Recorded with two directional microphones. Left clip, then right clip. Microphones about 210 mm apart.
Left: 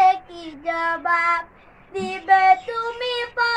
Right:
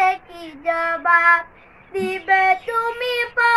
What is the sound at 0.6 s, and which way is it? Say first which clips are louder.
Child singing: right 2 dB; 15° right (ahead or behind).